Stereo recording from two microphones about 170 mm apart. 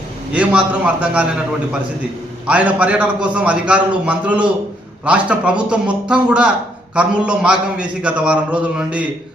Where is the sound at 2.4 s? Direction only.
10° right (ahead or behind).